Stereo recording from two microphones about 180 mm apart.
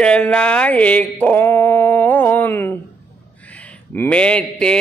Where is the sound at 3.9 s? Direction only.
10° left (ahead or behind).